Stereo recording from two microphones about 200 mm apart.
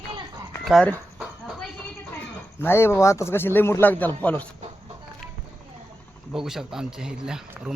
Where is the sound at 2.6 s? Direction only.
10° left (ahead or behind).